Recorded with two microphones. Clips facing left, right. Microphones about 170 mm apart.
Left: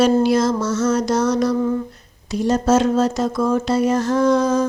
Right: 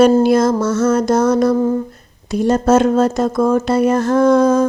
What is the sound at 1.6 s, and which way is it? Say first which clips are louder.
Humming: right 4 dB; 40° right (ahead or behind).